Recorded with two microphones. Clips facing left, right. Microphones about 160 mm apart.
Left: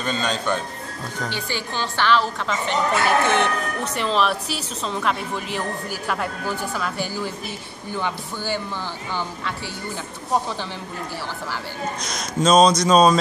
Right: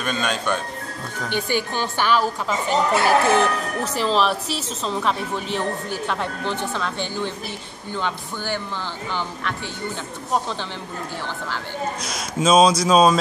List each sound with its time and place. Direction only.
0.2 s speech: 20° left (ahead or behind)
1.3 s speech: 15° right (ahead or behind)
2.9 s speech: 35° right (ahead or behind)
3.9 s speech: centre (ahead or behind)
12.0 s speech: 5° right (ahead or behind)